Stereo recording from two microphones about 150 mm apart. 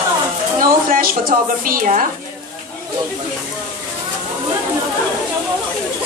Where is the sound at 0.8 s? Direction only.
70° right (ahead or behind).